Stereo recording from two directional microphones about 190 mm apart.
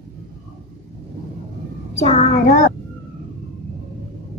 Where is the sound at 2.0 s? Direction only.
35° left (ahead or behind).